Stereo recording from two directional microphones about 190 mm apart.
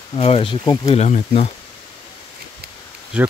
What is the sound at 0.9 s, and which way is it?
Speech, 35° left (ahead or behind).